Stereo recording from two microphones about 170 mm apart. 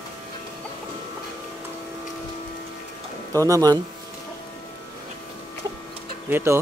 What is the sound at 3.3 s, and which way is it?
Speech, 20° right (ahead or behind).